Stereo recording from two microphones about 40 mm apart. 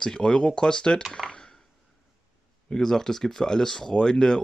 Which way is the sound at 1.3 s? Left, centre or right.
Centre.